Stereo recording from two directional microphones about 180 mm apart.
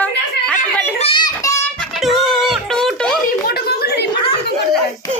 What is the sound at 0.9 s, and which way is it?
Child singing, 30° left (ahead or behind).